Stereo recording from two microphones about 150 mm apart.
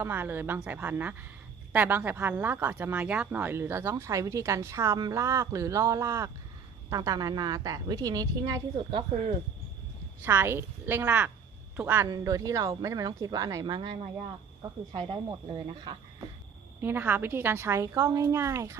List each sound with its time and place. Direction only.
0.0 s a woman's voice: 15° right (ahead or behind); by 9.0 s 30° right (ahead or behind)
10.2 s speech: 15° right (ahead or behind)
12.0 s a woman's voice: 25° right (ahead or behind)
15.3 s speech: 30° right (ahead or behind)
16.8 s speech: 15° right (ahead or behind)